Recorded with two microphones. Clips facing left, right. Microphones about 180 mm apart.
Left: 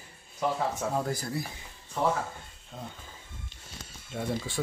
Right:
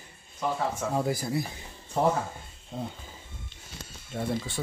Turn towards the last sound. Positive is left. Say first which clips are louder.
# right 2 dB
turn(degrees=0)  # may be behind; listen again after turning